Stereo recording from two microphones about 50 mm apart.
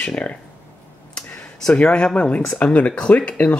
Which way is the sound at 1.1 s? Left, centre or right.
Centre.